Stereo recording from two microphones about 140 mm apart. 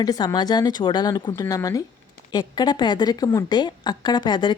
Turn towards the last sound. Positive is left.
turn(degrees=30)  # may be behind; listen again after turning